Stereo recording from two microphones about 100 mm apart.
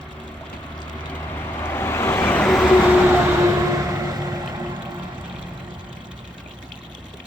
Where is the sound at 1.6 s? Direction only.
25° left (ahead or behind).